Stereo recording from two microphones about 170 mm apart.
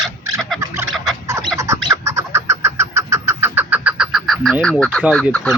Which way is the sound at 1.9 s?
15° right (ahead or behind).